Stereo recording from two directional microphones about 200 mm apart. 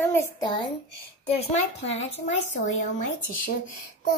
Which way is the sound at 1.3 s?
30° left (ahead or behind).